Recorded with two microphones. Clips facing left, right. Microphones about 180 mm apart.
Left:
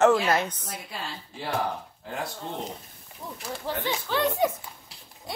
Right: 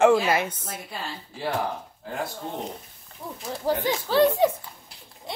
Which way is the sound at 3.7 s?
35° right (ahead or behind).